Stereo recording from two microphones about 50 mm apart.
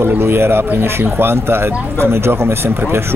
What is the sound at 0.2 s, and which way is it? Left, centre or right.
Speech, right.